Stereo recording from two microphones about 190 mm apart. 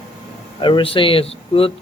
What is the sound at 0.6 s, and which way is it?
Speech, 25° left (ahead or behind).